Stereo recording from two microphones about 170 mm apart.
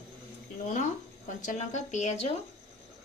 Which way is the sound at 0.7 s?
50° left (ahead or behind).